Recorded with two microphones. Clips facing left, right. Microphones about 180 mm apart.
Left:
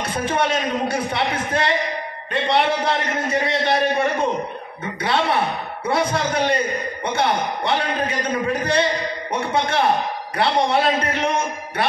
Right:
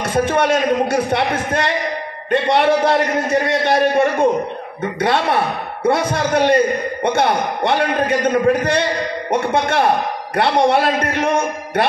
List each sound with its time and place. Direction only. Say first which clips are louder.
0.0 s a man's voice: right 5 dB; 45° right (ahead or behind)